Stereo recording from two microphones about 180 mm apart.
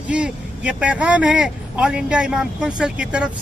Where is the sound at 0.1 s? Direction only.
5° right (ahead or behind).